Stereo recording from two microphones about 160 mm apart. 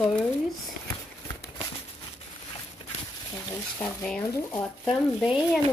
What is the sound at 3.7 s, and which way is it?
Speech, 5° left (ahead or behind).